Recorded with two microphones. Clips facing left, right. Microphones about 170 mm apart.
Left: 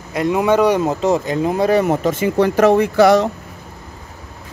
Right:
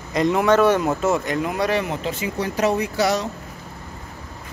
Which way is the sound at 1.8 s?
50° left (ahead or behind).